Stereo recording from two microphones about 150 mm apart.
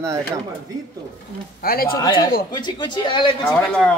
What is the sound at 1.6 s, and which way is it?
Speech, 75° left (ahead or behind).